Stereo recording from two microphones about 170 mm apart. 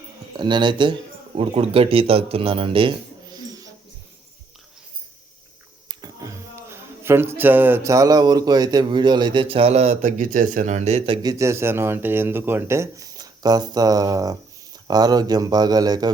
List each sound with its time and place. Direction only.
0.3 s speech: 25° right (ahead or behind)
3.3 s a sound: 20° right (ahead or behind)
5.9 s speech: 20° right (ahead or behind)